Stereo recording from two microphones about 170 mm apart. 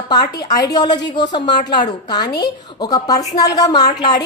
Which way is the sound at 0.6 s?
25° left (ahead or behind).